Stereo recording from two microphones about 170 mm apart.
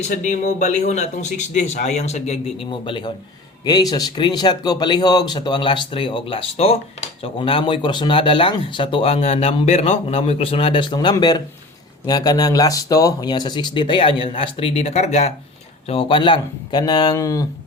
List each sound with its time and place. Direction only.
0.0 s speech: 50° left (ahead or behind)
15.9 s speech: 30° left (ahead or behind)